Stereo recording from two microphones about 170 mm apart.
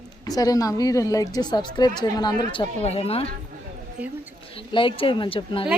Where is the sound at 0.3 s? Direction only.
20° left (ahead or behind).